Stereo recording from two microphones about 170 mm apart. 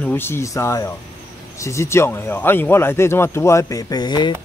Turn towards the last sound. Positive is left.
turn(degrees=25)  # may be behind; listen again after turning